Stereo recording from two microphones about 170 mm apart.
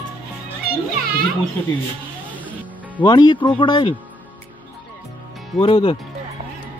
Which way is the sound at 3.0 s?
25° left (ahead or behind).